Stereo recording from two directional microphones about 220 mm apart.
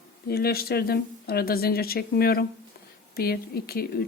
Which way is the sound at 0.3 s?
45° left (ahead or behind).